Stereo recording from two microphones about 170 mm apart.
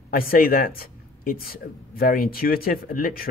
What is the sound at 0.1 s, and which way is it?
Speech, 60° left (ahead or behind).